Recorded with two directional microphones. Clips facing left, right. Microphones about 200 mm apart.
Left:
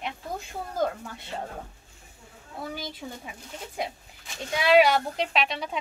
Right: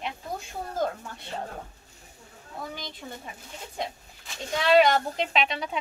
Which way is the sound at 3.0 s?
10° left (ahead or behind).